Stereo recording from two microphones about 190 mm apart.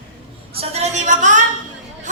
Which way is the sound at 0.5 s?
35° right (ahead or behind).